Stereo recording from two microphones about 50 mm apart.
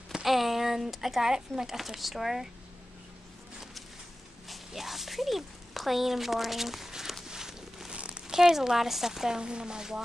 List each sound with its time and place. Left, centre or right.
0.1 s a sound: centre
1.6 s speech: centre
4.5 s speech: centre
7.2 s walk: centre
7.9 s crumpling: right
8.4 s speech: centre